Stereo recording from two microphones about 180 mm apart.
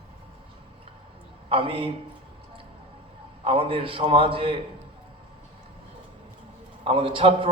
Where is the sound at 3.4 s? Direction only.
30° right (ahead or behind).